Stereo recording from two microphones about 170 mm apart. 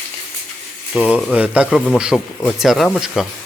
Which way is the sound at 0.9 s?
5° right (ahead or behind).